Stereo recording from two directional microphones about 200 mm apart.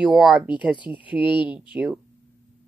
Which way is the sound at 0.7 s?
25° left (ahead or behind).